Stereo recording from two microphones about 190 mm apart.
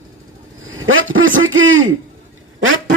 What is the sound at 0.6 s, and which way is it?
Speech, 90° right.